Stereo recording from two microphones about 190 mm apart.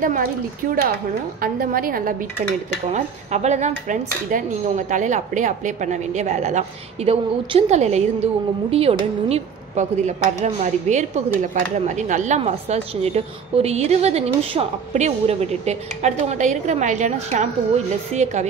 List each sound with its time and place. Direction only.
0.0 s speech: 45° right (ahead or behind)
2.9 s speech: 35° right (ahead or behind)